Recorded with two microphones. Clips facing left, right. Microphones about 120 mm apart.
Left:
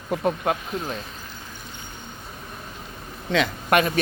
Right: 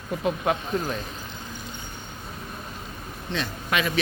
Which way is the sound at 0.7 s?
35° right (ahead or behind).